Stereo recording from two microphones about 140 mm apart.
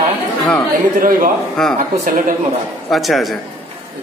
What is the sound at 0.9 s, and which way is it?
Speech, 80° right.